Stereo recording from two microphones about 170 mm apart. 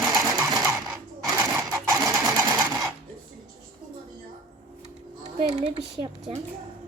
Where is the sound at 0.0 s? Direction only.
Centre (ahead or behind).